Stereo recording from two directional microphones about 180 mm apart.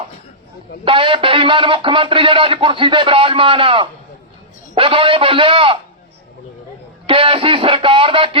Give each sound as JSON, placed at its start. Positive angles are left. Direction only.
{"t": 0.9, "sound": "speech", "side_deg": -30}
{"t": 7.1, "sound": "speech", "side_deg": -30}